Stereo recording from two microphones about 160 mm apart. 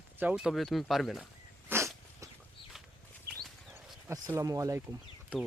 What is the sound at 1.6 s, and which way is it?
Dog, 15° right (ahead or behind).